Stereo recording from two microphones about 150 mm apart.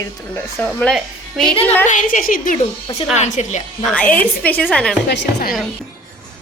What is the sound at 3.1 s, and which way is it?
Speech, 55° left (ahead or behind).